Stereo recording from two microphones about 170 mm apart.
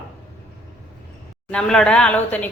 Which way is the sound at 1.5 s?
5° left (ahead or behind).